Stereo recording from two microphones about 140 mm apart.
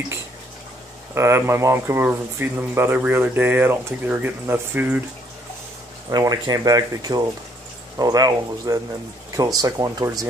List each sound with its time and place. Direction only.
1.1 s speech: 20° right (ahead or behind)
6.0 s speech: 25° right (ahead or behind)